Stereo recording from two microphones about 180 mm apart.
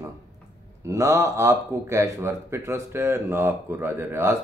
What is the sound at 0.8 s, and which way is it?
Speech, 15° right (ahead or behind).